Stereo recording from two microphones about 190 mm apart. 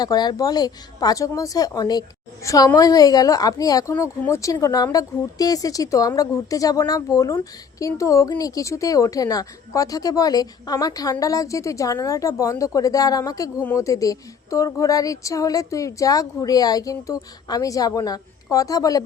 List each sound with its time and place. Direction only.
0.0 s speech: 20° left (ahead or behind)